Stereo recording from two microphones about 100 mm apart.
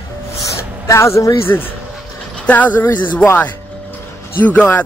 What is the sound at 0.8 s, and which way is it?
A man's voice, 30° left (ahead or behind).